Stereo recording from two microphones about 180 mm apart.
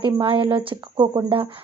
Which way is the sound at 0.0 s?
30° right (ahead or behind).